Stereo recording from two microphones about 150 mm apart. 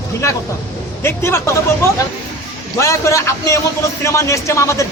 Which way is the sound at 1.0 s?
15° left (ahead or behind).